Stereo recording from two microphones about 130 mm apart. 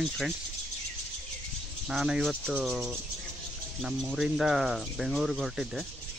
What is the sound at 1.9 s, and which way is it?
Speech, 5° right (ahead or behind).